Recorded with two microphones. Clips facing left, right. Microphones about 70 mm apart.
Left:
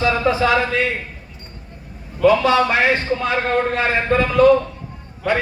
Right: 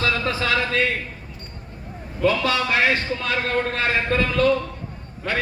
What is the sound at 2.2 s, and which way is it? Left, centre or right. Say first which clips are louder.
A man's voice: left 7 dB; left.